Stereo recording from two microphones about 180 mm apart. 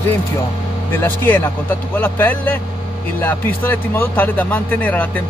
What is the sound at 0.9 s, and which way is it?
Speech, 10° left (ahead or behind).